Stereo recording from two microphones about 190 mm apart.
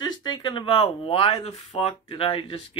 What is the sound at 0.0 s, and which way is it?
Speech, 20° left (ahead or behind).